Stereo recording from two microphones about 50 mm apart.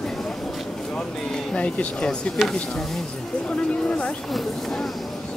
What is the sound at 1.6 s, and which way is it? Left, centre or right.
Speech, left.